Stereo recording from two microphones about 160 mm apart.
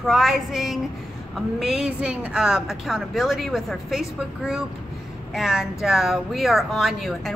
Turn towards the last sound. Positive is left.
turn(degrees=0)  # may be behind; listen again after turning